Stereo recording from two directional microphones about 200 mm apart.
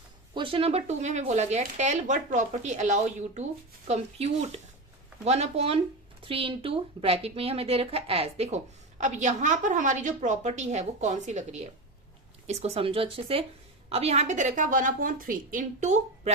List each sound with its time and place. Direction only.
0.3 s a woman's voice: 25° right (ahead or behind)